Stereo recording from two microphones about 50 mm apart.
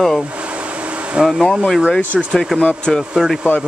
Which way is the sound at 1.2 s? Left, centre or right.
Centre.